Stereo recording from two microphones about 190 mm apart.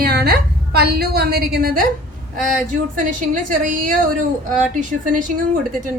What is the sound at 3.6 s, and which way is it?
A woman's voice, 40° right (ahead or behind).